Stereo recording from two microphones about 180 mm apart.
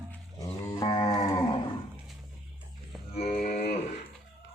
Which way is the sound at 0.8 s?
25° left (ahead or behind).